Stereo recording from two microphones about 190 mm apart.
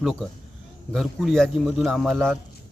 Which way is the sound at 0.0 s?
Centre (ahead or behind).